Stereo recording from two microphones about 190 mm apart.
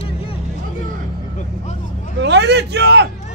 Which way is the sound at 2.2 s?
65° right (ahead or behind).